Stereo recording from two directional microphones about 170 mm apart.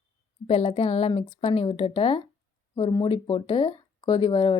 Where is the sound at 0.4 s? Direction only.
35° left (ahead or behind).